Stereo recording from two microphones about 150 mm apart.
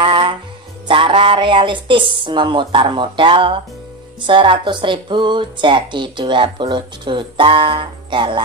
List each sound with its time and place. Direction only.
0.0 s music: 35° right (ahead or behind)
2.1 s speech: 30° right (ahead or behind)